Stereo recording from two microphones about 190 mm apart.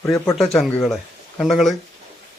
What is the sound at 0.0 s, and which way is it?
Speech, 15° left (ahead or behind).